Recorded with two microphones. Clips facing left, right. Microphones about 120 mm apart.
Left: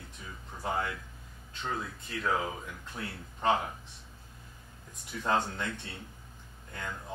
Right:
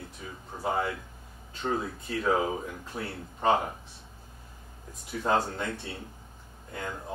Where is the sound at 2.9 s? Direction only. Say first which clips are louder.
Right 4 dB; 35° right (ahead or behind).